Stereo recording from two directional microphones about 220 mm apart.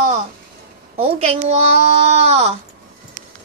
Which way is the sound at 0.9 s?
25° right (ahead or behind).